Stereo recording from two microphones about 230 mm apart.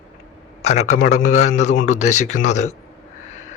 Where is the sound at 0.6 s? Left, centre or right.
Left.